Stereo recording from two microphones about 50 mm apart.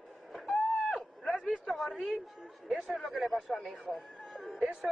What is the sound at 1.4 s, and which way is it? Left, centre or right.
Speech, centre.